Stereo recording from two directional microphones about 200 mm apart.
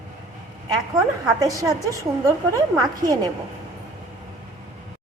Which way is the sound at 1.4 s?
15° right (ahead or behind).